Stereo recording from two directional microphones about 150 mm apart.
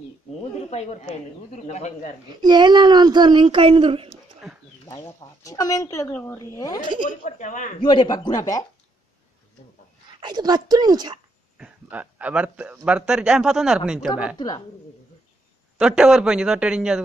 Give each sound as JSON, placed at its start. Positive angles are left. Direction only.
{"t": 0.7, "sound": "speech", "side_deg": 45}
{"t": 2.4, "sound": "speech", "side_deg": -30}
{"t": 4.4, "sound": "bird", "side_deg": -5}
{"t": 4.8, "sound": "speech", "side_deg": 25}
{"t": 7.1, "sound": "speech", "side_deg": 55}
{"t": 7.8, "sound": "speech", "side_deg": 30}
{"t": 10.2, "sound": "speech", "side_deg": -30}
{"t": 11.5, "sound": "speech", "side_deg": -10}
{"t": 15.8, "sound": "speech", "side_deg": -5}